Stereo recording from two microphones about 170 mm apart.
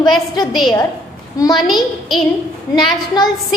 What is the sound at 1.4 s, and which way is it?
Speech, 20° left (ahead or behind).